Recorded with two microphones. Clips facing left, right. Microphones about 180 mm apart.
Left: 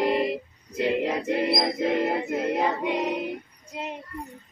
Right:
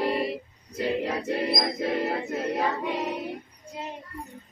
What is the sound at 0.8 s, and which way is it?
Music, 20° left (ahead or behind).